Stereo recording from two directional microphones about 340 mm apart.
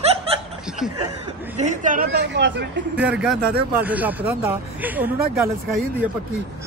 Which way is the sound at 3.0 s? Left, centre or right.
Centre.